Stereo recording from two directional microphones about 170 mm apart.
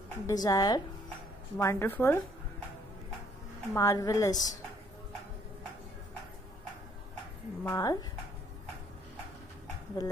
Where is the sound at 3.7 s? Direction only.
20° left (ahead or behind).